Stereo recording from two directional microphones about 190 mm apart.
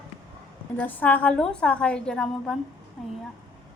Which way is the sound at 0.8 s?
10° left (ahead or behind).